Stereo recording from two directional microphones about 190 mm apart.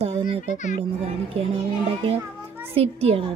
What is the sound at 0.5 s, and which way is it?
Speech, 40° left (ahead or behind).